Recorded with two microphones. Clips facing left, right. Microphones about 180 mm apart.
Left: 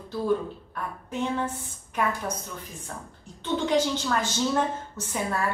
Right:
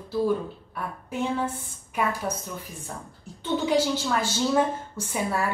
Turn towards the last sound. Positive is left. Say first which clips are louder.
# right 2 dB
turn(degrees=-10)  # may be behind; listen again after turning